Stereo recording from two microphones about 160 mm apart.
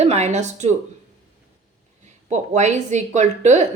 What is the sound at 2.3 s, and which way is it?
A woman's voice, 45° right (ahead or behind).